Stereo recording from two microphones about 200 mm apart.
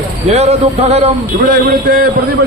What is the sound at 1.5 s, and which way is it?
Speech, 45° right (ahead or behind).